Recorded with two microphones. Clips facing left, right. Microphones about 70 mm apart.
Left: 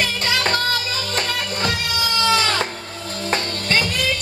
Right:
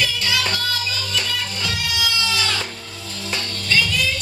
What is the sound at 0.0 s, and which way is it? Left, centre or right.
Music, left.